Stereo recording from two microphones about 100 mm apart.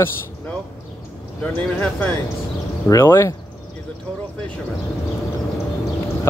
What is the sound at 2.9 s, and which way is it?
Speech, 25° left (ahead or behind).